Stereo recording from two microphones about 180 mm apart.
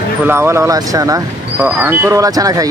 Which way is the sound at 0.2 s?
15° right (ahead or behind).